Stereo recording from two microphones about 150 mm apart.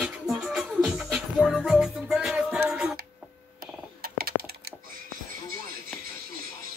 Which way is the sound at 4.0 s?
90° right.